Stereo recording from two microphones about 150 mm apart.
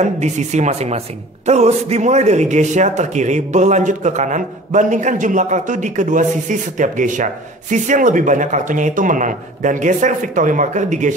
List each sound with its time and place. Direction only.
0.0 s a man's voice: 50° right (ahead or behind)